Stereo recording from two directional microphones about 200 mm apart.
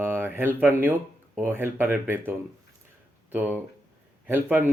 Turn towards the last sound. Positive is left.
turn(degrees=-10)  # may be behind; listen again after turning